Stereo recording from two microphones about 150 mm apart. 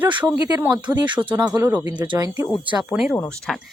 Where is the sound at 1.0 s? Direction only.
30° right (ahead or behind).